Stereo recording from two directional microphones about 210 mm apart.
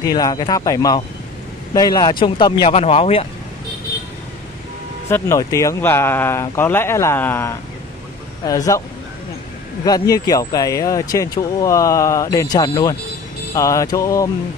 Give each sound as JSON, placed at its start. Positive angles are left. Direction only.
{"t": 0.0, "sound": "speech", "side_deg": 20}
{"t": 5.1, "sound": "speech", "side_deg": 15}
{"t": 9.8, "sound": "speech", "side_deg": 15}